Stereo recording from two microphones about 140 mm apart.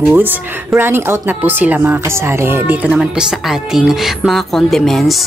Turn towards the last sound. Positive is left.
turn(degrees=0)  # may be behind; listen again after turning